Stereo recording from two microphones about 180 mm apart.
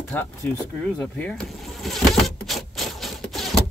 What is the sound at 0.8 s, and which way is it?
Vehicle, 5° left (ahead or behind).